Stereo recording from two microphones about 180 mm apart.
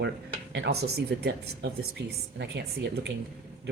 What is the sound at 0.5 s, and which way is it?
Speech, 70° right (ahead or behind).